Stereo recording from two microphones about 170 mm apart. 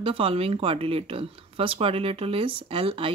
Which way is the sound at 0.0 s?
35° right (ahead or behind).